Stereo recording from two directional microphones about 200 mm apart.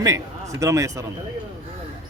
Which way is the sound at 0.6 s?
15° right (ahead or behind).